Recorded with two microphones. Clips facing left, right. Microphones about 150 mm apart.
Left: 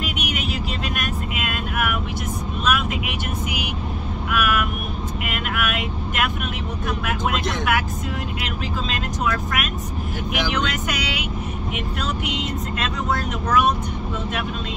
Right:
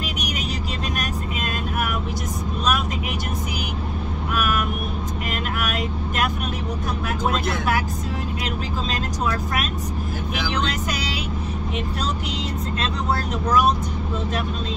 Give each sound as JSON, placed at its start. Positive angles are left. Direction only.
{"t": 0.0, "sound": "vehicle", "side_deg": -40}
{"t": 9.2, "sound": "vehicle", "side_deg": -35}
{"t": 12.8, "sound": "vehicle", "side_deg": -35}